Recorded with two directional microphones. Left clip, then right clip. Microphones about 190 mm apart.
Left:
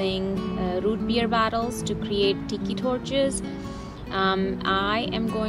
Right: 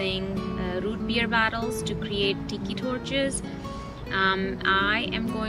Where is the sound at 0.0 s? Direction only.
20° left (ahead or behind).